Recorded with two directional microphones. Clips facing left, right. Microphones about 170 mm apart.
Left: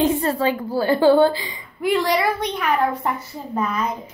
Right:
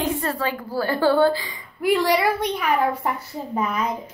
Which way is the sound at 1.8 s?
10° right (ahead or behind).